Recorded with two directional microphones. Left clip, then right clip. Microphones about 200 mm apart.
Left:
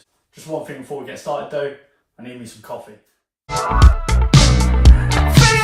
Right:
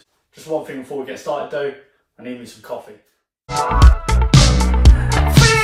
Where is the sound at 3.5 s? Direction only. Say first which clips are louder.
Right 1 dB; centre (ahead or behind).